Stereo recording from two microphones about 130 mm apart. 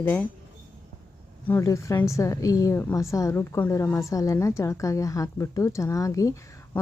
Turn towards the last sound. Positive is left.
turn(degrees=25)  # may be behind; listen again after turning